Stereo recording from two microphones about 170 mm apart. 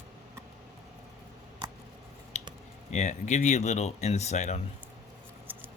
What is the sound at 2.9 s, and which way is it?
Speech, 45° left (ahead or behind).